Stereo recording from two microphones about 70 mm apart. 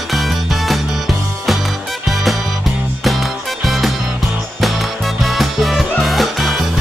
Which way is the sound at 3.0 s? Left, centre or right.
Centre.